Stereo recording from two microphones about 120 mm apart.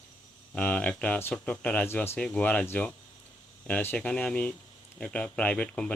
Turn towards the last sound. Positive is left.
turn(degrees=10)  # may be behind; listen again after turning